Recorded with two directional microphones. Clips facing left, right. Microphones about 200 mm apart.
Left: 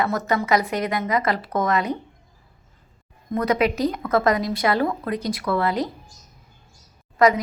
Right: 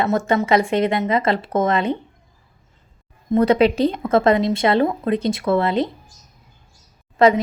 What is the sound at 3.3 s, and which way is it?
A woman's voice, 30° right (ahead or behind).